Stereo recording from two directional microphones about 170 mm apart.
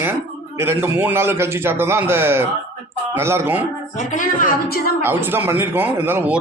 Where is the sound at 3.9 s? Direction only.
50° left (ahead or behind).